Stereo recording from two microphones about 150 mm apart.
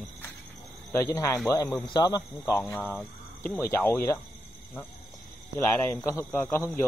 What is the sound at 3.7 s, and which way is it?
Speech, 15° left (ahead or behind).